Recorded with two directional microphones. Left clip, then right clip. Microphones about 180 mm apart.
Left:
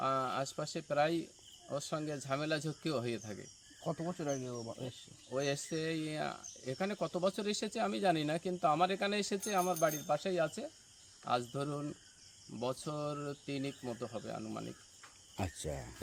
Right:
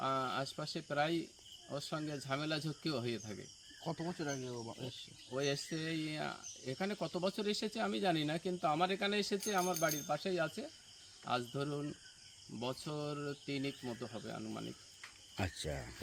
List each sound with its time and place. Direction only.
0.0 s speech: 10° left (ahead or behind)
3.8 s speech: 35° left (ahead or behind)
5.3 s speech: 10° left (ahead or behind)